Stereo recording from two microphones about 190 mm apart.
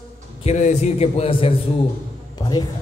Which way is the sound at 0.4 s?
35° left (ahead or behind).